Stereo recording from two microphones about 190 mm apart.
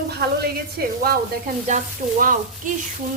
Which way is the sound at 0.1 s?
55° right (ahead or behind).